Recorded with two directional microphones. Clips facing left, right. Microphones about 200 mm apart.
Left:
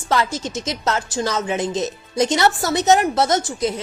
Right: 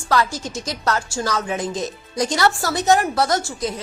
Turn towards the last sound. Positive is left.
turn(degrees=20)  # may be behind; listen again after turning